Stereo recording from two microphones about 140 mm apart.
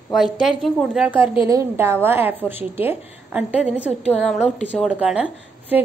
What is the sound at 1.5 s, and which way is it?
A woman's voice, 20° right (ahead or behind).